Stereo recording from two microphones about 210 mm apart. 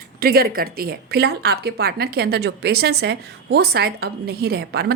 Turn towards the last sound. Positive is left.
turn(degrees=-50)  # may be behind; listen again after turning